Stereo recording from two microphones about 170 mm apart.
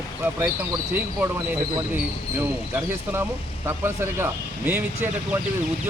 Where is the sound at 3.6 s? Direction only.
15° right (ahead or behind).